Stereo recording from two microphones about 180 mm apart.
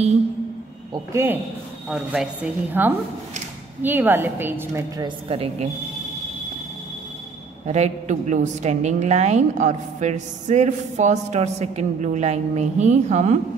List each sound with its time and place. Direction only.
0.9 s a woman's voice: 15° right (ahead or behind); by 5.7 s 30° right (ahead or behind)
7.6 s a woman's voice: 40° right (ahead or behind)